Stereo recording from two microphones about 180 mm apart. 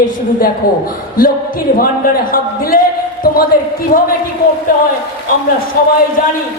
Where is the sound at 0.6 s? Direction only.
55° left (ahead or behind).